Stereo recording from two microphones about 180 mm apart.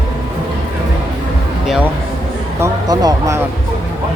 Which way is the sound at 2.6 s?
20° right (ahead or behind).